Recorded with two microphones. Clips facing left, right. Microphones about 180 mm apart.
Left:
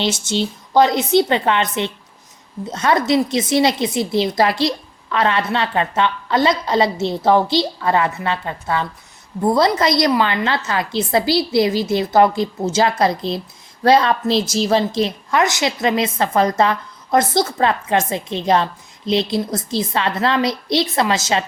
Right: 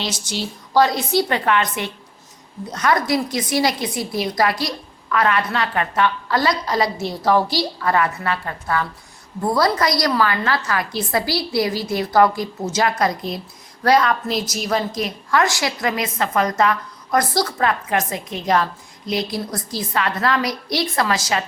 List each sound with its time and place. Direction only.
0.0 s a woman's voice: 25° left (ahead or behind)